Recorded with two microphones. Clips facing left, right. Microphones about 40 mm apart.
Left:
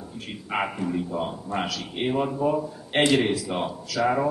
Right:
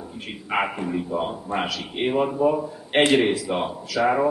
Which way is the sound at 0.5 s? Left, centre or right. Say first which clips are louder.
Right 2 dB; centre.